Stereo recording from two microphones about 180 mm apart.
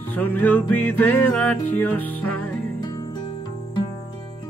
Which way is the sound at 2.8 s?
25° left (ahead or behind).